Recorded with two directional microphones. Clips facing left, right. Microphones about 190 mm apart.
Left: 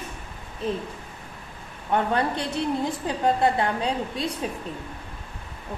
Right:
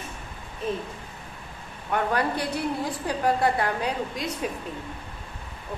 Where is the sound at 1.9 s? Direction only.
25° left (ahead or behind).